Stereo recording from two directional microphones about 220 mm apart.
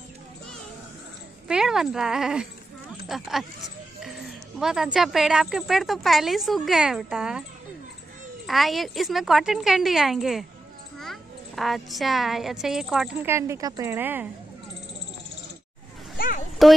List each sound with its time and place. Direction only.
1.5 s a child's voice: centre (ahead or behind)
4.6 s a child's voice: 5° right (ahead or behind)
8.5 s a child's voice: centre (ahead or behind)
16.6 s a child's voice: centre (ahead or behind)